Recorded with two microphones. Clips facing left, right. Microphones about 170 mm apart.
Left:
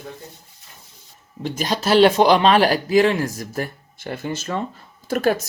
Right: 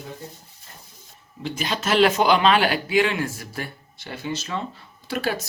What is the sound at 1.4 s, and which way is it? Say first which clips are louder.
Speech: left 4 dB; 40° left (ahead or behind).